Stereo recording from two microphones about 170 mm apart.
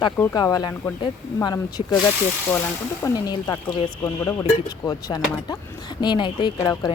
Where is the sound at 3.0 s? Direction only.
20° left (ahead or behind).